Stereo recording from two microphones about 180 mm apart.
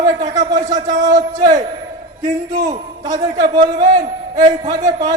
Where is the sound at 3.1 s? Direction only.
25° right (ahead or behind).